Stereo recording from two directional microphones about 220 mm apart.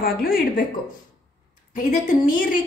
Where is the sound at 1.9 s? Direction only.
40° left (ahead or behind).